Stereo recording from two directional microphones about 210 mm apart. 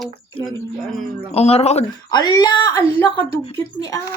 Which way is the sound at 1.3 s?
30° left (ahead or behind).